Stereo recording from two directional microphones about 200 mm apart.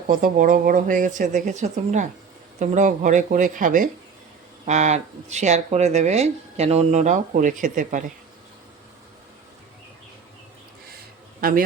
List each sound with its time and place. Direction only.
0.1 s speech: 45° right (ahead or behind)
11.3 s speech: 45° right (ahead or behind)